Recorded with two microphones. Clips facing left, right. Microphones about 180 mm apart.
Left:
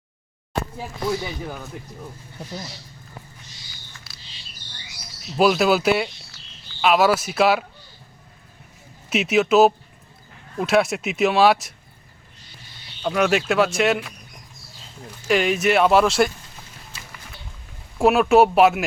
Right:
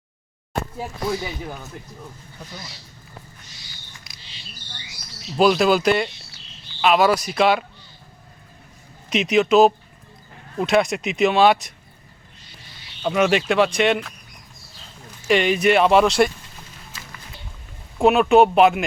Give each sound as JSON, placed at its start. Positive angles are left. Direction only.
{"t": 3.9, "sound": "a sound", "side_deg": -15}
{"t": 5.4, "sound": "speech", "side_deg": 5}
{"t": 9.0, "sound": "speech", "side_deg": 5}
{"t": 13.0, "sound": "speech", "side_deg": 0}
{"t": 15.3, "sound": "speech", "side_deg": 0}
{"t": 18.0, "sound": "speech", "side_deg": 0}